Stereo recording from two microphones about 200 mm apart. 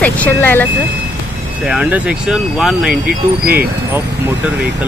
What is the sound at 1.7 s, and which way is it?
Speech, 5° right (ahead or behind).